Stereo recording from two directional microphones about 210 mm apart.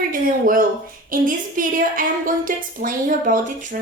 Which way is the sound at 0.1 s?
40° right (ahead or behind).